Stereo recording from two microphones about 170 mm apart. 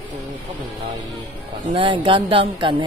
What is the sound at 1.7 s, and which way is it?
Speech, 30° right (ahead or behind).